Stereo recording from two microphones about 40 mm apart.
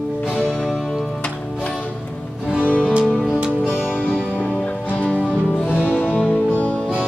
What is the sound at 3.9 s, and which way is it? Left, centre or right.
Music, left.